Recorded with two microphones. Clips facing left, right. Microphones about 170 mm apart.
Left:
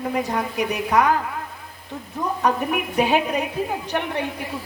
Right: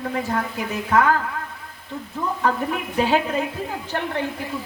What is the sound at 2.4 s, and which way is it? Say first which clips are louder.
A woman's voice: left 2 dB; 15° left (ahead or behind).